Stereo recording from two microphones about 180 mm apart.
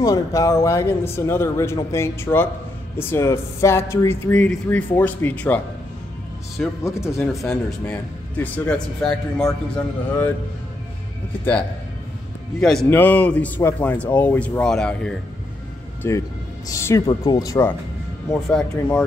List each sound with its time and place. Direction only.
0.0 s speech: 20° left (ahead or behind)
6.8 s speech: 15° left (ahead or behind)
12.5 s speech: 5° left (ahead or behind)
16.0 s speech: 15° left (ahead or behind)